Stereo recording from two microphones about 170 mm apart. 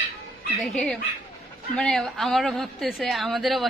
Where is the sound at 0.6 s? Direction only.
5° left (ahead or behind).